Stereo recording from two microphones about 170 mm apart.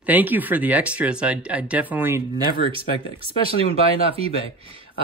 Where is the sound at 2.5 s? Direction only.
30° right (ahead or behind).